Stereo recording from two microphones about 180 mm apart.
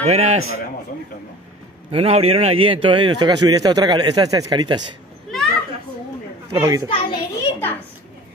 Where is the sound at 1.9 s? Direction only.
35° right (ahead or behind).